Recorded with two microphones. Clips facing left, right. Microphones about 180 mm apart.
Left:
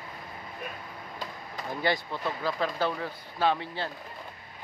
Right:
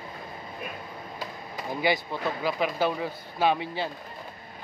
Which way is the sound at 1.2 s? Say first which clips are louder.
Right 1 dB; 5° right (ahead or behind).